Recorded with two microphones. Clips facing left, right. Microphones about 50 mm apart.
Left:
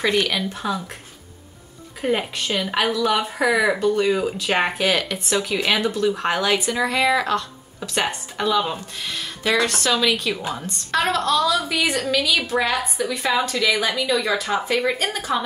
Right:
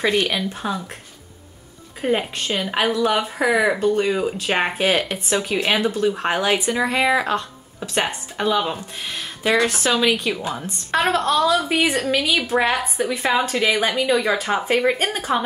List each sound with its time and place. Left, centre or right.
0.4 s speech: centre
2.0 s speech: centre
4.7 s speech: centre
9.1 s a sound: centre
9.6 s speech: centre